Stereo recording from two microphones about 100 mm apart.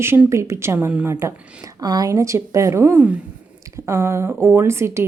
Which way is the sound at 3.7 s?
30° right (ahead or behind).